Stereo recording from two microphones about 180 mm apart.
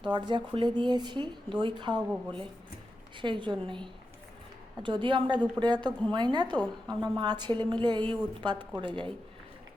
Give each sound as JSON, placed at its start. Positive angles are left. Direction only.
{"t": 0.0, "sound": "speech", "side_deg": -25}